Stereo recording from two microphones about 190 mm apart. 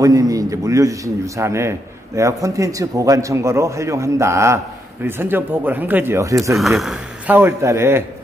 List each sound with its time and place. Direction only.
0.0 s a man's voice: 20° right (ahead or behind)
6.5 s a man's voice: centre (ahead or behind)